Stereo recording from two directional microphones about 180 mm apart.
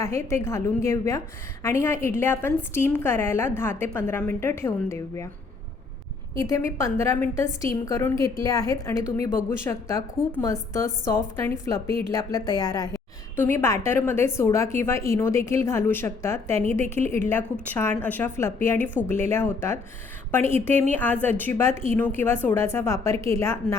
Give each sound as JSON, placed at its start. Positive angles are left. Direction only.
{"t": 0.0, "sound": "a woman's voice", "side_deg": 15}
{"t": 6.4, "sound": "a woman's voice", "side_deg": 15}